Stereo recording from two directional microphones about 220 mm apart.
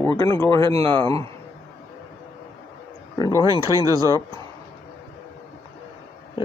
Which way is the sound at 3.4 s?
15° right (ahead or behind).